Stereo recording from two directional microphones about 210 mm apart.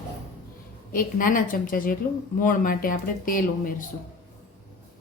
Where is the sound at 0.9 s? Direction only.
40° left (ahead or behind).